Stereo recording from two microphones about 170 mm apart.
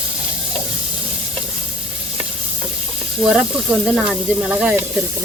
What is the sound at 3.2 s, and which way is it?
Speech, centre (ahead or behind).